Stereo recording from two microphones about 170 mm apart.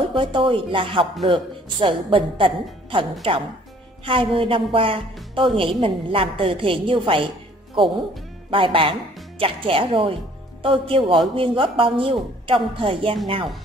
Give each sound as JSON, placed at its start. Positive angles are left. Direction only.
{"t": 0.1, "sound": "a woman's voice", "side_deg": -30}
{"t": 8.5, "sound": "a woman's voice", "side_deg": -30}